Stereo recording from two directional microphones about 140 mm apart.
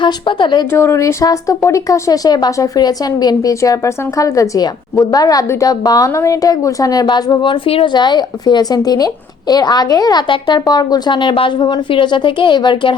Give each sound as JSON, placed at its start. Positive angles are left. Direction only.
{"t": 0.0, "sound": "a woman's voice", "side_deg": 35}
{"t": 0.7, "sound": "a woman's voice", "side_deg": 20}